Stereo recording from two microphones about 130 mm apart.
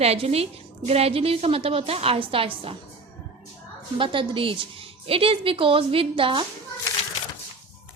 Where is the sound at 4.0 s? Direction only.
40° right (ahead or behind).